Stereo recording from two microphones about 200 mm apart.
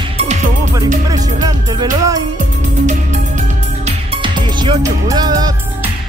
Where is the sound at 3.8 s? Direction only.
25° right (ahead or behind).